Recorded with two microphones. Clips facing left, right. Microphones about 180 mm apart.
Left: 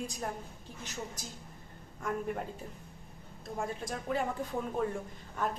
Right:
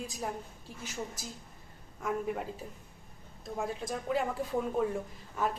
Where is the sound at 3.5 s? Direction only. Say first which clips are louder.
Right 2 dB; centre (ahead or behind).